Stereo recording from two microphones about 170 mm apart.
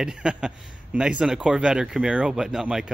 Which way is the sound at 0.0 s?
5° right (ahead or behind).